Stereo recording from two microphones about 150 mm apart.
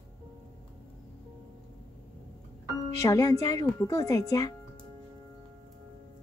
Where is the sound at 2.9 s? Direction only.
20° left (ahead or behind).